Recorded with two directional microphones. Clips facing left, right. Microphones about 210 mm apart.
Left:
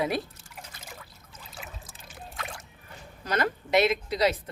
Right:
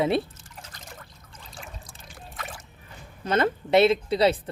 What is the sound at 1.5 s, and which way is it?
Trickle, 5° left (ahead or behind).